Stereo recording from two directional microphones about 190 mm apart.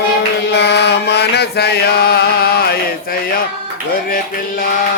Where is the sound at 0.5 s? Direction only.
65° left (ahead or behind).